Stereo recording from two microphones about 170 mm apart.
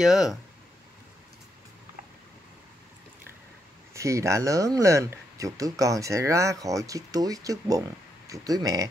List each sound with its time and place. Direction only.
0.0 s speech: 5° right (ahead or behind)
3.9 s speech: 20° right (ahead or behind)